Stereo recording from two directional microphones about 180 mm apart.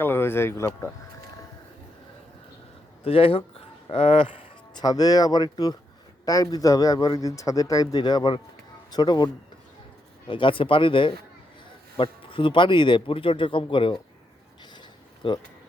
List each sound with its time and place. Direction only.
0.0 s speech: 10° left (ahead or behind)
3.0 s a man's voice: 30° left (ahead or behind)
14.6 s a sound: 25° left (ahead or behind)